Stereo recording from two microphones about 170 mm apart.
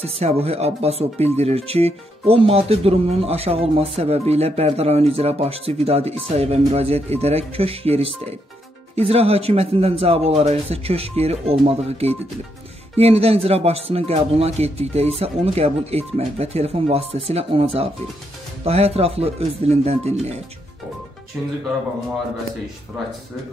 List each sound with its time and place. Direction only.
0.0 s speech: 35° right (ahead or behind)
21.4 s speech: 5° right (ahead or behind)